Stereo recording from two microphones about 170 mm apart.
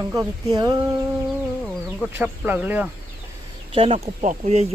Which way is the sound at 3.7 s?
35° right (ahead or behind).